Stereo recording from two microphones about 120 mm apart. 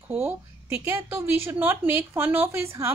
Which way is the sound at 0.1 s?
15° right (ahead or behind).